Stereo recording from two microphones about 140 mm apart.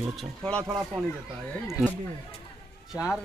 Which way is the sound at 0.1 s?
Centre (ahead or behind).